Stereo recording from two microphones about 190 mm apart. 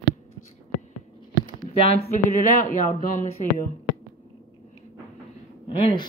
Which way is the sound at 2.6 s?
45° left (ahead or behind).